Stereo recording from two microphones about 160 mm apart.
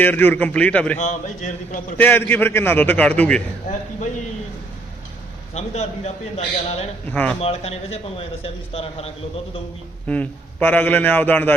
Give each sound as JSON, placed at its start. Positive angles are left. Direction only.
{"t": 0.0, "sound": "a man's voice", "side_deg": 10}
{"t": 0.9, "sound": "a man's voice", "side_deg": 45}
{"t": 2.0, "sound": "a man's voice", "side_deg": 10}
{"t": 5.5, "sound": "a man's voice", "side_deg": 40}
{"t": 7.1, "sound": "a man's voice", "side_deg": 10}
{"t": 7.3, "sound": "a man's voice", "side_deg": 40}
{"t": 10.1, "sound": "a man's voice", "side_deg": 10}